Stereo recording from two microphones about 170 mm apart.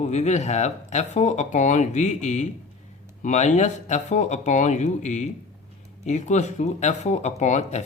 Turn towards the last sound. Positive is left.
turn(degrees=40)  # may be behind; listen again after turning